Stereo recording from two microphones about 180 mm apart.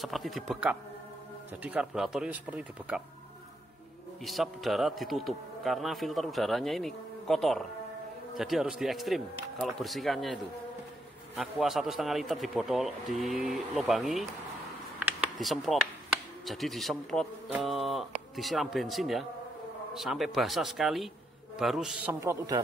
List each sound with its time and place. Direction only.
0.0 s a man's voice: centre (ahead or behind)
4.2 s a man's voice: centre (ahead or behind)
15.0 s a sound: 10° right (ahead or behind)
15.4 s a man's voice: centre (ahead or behind)
22.2 s speech: 15° right (ahead or behind)